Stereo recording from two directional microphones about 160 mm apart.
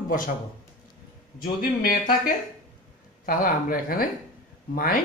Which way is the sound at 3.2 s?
60° left (ahead or behind).